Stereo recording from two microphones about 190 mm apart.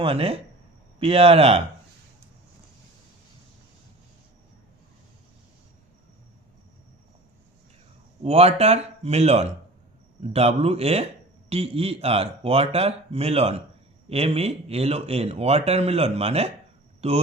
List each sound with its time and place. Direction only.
0.0 s speech: 30° right (ahead or behind)
8.2 s speech: 35° right (ahead or behind)